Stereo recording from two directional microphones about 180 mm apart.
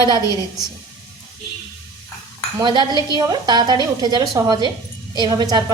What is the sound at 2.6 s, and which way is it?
A woman's voice, 25° right (ahead or behind).